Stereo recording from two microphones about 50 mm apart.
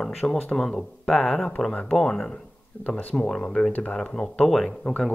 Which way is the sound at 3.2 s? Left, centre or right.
Centre.